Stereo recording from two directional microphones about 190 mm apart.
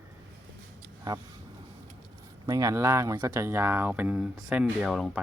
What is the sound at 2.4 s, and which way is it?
Speech, 15° right (ahead or behind).